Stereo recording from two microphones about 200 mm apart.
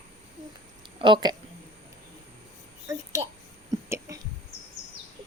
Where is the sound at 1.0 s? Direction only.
20° right (ahead or behind).